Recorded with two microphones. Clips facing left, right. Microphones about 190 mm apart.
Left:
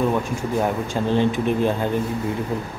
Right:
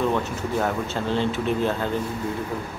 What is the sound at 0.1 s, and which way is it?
Speech, 10° left (ahead or behind).